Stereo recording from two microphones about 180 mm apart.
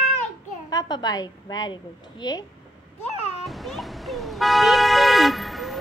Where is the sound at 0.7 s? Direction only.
20° left (ahead or behind).